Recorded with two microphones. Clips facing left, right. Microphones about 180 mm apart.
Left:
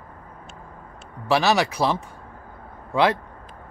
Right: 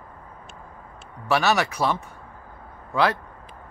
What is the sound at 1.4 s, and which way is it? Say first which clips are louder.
Speech: left 2 dB; 15° left (ahead or behind).